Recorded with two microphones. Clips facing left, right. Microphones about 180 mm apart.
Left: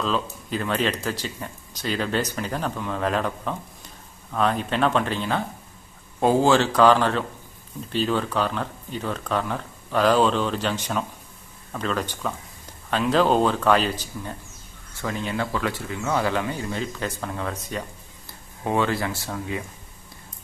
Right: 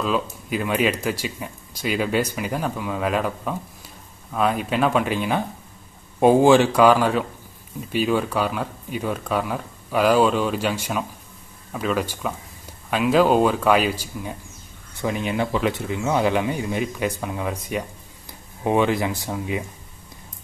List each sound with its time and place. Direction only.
0.0 s speech: 10° right (ahead or behind)